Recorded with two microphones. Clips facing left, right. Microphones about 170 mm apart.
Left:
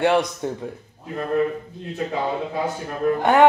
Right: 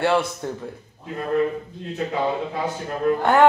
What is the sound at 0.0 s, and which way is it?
Speech, 20° left (ahead or behind).